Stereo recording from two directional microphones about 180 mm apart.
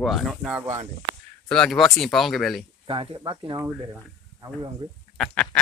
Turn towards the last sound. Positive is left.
turn(degrees=5)  # may be behind; listen again after turning